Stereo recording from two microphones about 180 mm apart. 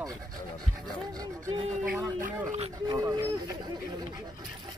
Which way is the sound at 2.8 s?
20° right (ahead or behind).